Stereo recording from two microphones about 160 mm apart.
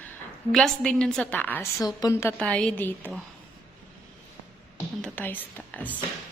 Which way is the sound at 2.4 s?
5° left (ahead or behind).